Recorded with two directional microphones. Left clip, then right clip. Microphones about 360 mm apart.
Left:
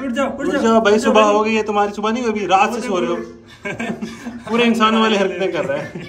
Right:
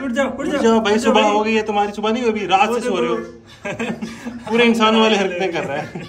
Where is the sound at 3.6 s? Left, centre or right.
Centre.